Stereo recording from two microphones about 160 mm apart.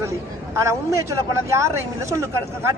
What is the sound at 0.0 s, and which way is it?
Speech, 20° right (ahead or behind).